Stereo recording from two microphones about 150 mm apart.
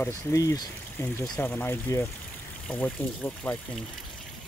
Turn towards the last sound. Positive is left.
turn(degrees=10)  # may be behind; listen again after turning